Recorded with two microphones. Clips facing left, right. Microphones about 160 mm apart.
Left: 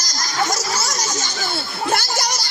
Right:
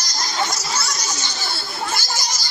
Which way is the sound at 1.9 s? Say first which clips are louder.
Left 9 dB; 65° left (ahead or behind).